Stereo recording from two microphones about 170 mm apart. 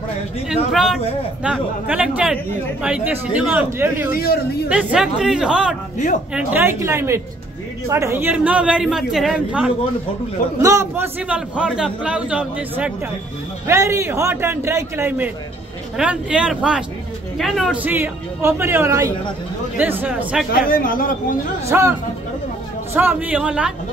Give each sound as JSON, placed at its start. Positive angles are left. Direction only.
{"t": 0.7, "sound": "a woman's voice", "side_deg": 0}
{"t": 10.6, "sound": "a man's voice", "side_deg": -15}
{"t": 17.8, "sound": "a man's voice", "side_deg": -10}
{"t": 20.6, "sound": "a man's voice", "side_deg": 55}
{"t": 21.6, "sound": "a man's voice", "side_deg": -15}
{"t": 22.9, "sound": "a man's voice", "side_deg": -10}